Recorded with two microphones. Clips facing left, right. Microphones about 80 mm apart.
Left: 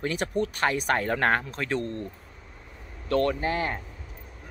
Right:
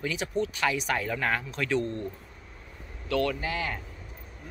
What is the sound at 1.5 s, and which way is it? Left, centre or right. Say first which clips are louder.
Speech: right 1 dB; left.